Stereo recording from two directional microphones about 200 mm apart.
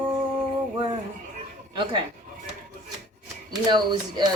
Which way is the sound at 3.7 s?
20° right (ahead or behind).